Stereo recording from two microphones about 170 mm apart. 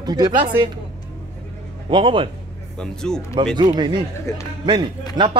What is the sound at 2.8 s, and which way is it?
Speech, 5° left (ahead or behind).